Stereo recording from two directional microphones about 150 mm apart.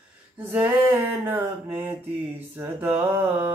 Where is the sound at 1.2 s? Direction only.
15° right (ahead or behind).